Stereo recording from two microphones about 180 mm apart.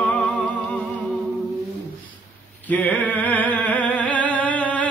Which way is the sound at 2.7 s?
10° left (ahead or behind).